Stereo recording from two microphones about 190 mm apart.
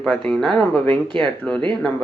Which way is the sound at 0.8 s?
25° right (ahead or behind).